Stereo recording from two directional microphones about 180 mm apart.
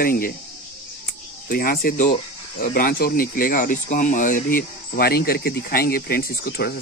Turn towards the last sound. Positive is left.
turn(degrees=60)  # may be behind; listen again after turning